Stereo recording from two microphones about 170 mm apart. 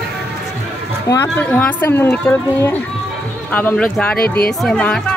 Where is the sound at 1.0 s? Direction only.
15° left (ahead or behind).